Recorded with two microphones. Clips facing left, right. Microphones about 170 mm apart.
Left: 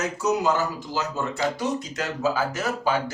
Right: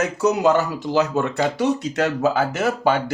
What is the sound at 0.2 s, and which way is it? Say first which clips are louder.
Speech: right 5 dB; 65° right (ahead or behind).